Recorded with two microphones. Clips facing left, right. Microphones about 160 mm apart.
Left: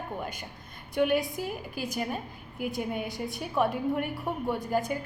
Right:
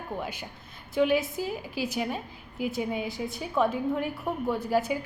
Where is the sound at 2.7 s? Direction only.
Centre (ahead or behind).